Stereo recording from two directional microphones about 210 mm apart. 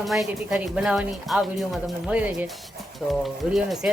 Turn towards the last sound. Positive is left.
turn(degrees=0)  # may be behind; listen again after turning